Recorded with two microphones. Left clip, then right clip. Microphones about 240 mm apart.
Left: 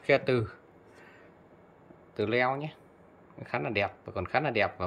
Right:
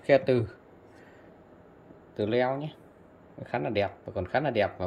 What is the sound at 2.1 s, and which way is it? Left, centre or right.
Speech, centre.